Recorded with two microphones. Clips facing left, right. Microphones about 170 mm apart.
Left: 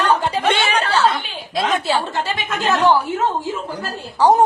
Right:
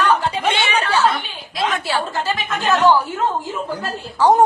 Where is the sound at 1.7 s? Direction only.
20° left (ahead or behind).